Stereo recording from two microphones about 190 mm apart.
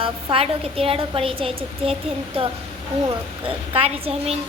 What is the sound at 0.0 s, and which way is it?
A woman's voice, 30° right (ahead or behind).